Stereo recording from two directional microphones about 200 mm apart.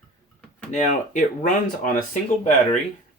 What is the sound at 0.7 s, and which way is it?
Speech, 35° left (ahead or behind).